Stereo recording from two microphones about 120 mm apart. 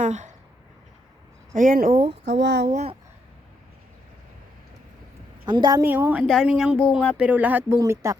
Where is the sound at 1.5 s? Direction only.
90° right.